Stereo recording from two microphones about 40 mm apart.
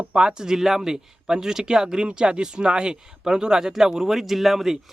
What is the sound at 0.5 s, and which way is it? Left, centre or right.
Speech, centre.